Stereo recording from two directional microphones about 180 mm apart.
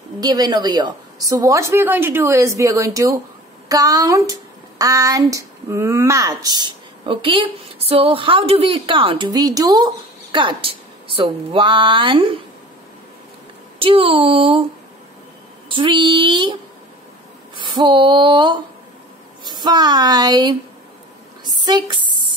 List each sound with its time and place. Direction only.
0.2 s a woman's voice: 20° right (ahead or behind)
13.7 s a woman's voice: 30° right (ahead or behind)
15.7 s a woman's voice: 25° right (ahead or behind)
17.6 s a woman's voice: 25° right (ahead or behind)
21.5 s a sound: 25° right (ahead or behind)